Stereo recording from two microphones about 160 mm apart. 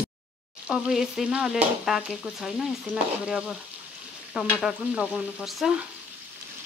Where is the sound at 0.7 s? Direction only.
5° right (ahead or behind).